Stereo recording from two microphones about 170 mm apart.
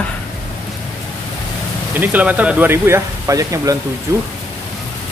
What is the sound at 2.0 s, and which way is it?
Speech, 10° right (ahead or behind).